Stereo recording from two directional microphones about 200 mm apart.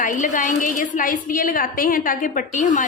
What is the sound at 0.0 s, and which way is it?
A woman's voice, 40° left (ahead or behind).